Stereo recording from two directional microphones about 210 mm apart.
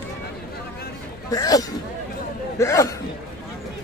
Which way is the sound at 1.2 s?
15° left (ahead or behind).